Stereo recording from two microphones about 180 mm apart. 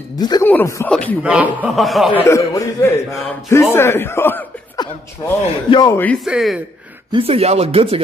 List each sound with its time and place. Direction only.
0.2 s a man's voice: 20° left (ahead or behind); by 1.1 s 5° left (ahead or behind)
1.2 s a man's voice: 5° right (ahead or behind)
2.2 s a man's voice: 15° left (ahead or behind)
5.4 s speech: 30° left (ahead or behind)
5.9 s a man's voice: 10° left (ahead or behind)
6.2 s a man's voice: 5° right (ahead or behind)
7.1 s speech: 30° right (ahead or behind)